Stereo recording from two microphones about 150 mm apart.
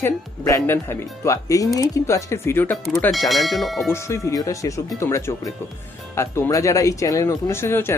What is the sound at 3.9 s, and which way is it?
Speech, 20° left (ahead or behind).